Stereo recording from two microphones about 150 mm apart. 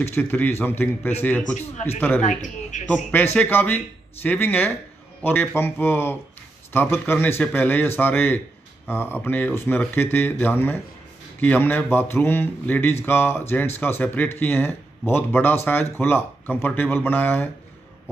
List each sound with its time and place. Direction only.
0.0 s speech: 15° left (ahead or behind)
2.2 s speech: 55° left (ahead or behind)
2.9 s speech: 10° left (ahead or behind)